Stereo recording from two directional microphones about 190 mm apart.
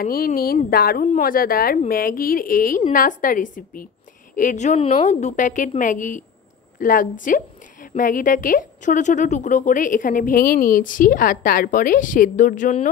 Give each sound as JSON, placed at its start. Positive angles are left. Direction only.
{"t": 0.0, "sound": "a woman's voice", "side_deg": 50}